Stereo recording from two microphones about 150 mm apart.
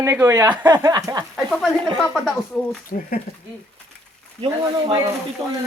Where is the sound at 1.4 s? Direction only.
5° left (ahead or behind).